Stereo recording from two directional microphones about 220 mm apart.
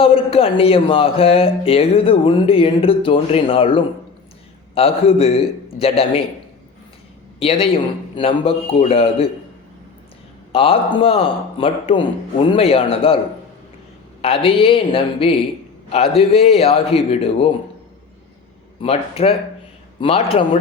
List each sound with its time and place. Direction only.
0.0 s speech: 25° left (ahead or behind)
7.3 s a man's voice: 25° left (ahead or behind)
10.5 s speech: 25° left (ahead or behind)
14.2 s speech: 25° left (ahead or behind)
18.8 s speech: 25° left (ahead or behind)